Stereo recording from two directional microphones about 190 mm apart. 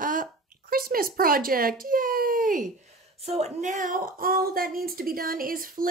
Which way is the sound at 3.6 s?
40° right (ahead or behind).